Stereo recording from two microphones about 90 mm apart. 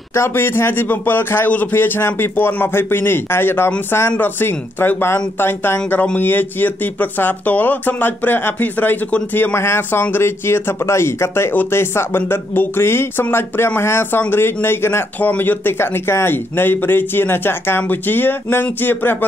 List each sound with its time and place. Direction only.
0.1 s speech: 30° left (ahead or behind)